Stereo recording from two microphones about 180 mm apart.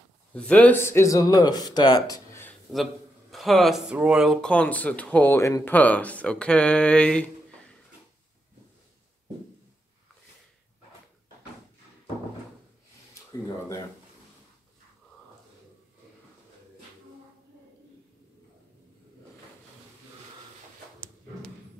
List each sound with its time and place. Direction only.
0.3 s speech: 5° left (ahead or behind)
2.7 s speech: centre (ahead or behind)